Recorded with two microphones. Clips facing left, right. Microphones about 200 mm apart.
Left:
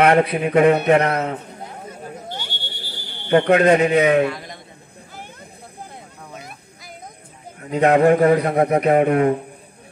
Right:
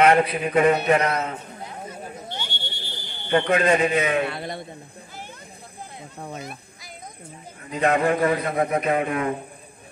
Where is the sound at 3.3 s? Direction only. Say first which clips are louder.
Left 6 dB; 65° left (ahead or behind).